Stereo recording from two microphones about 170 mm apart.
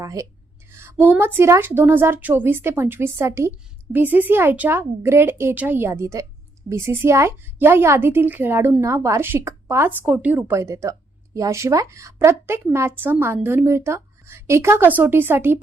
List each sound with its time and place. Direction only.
0.0 s a woman's voice: 20° right (ahead or behind)